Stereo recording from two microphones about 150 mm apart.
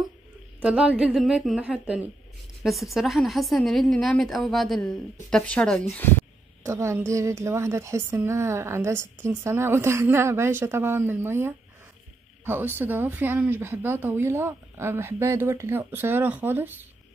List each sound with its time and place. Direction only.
0.6 s a woman's voice: 10° right (ahead or behind)
6.6 s a woman's voice: 20° right (ahead or behind)